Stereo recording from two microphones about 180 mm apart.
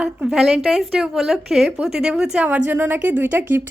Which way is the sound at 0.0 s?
5° right (ahead or behind).